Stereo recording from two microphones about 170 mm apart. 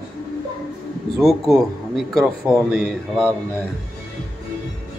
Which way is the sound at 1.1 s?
Centre (ahead or behind).